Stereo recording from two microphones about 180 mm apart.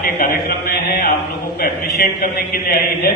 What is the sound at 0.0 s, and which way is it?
A man's voice, 55° left (ahead or behind).